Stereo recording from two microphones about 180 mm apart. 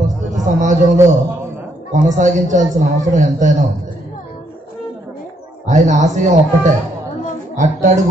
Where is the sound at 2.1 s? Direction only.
45° right (ahead or behind).